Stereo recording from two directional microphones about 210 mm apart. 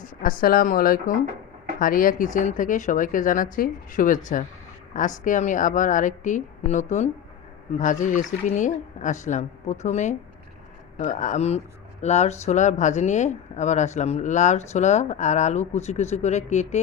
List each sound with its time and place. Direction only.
0.2 s speech: 45° left (ahead or behind)